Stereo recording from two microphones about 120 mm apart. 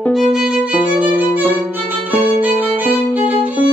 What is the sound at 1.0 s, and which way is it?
Music, 15° right (ahead or behind).